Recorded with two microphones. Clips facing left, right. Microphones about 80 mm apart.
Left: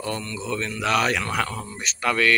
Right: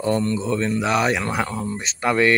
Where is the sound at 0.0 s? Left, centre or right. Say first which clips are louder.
Right 8 dB; right.